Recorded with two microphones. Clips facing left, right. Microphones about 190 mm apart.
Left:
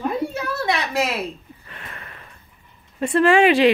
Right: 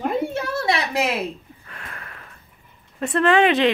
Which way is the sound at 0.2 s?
30° right (ahead or behind).